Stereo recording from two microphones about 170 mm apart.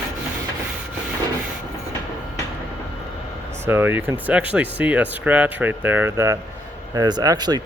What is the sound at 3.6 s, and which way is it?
Speech, 15° right (ahead or behind).